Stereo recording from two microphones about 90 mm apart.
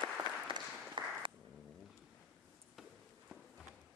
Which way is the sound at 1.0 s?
65° right (ahead or behind).